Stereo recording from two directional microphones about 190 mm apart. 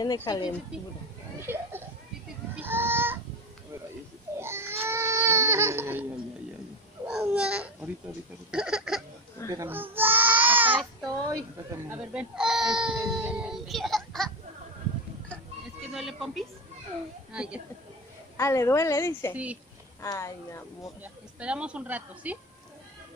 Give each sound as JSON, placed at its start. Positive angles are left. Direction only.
{"t": 0.0, "sound": "speech", "side_deg": 20}
{"t": 1.4, "sound": "speech", "side_deg": -10}
{"t": 2.6, "sound": "a sound", "side_deg": -10}
{"t": 4.4, "sound": "baby cry", "side_deg": -15}
{"t": 7.1, "sound": "babbling", "side_deg": -5}
{"t": 8.5, "sound": "speech", "side_deg": -5}
{"t": 9.5, "sound": "baby cry", "side_deg": -15}
{"t": 11.9, "sound": "speech", "side_deg": -5}
{"t": 15.9, "sound": "a woman's voice", "side_deg": 0}
{"t": 18.4, "sound": "a woman's voice", "side_deg": 15}
{"t": 19.3, "sound": "a woman's voice", "side_deg": -5}
{"t": 20.0, "sound": "a woman's voice", "side_deg": 15}
{"t": 21.0, "sound": "a woman's voice", "side_deg": -5}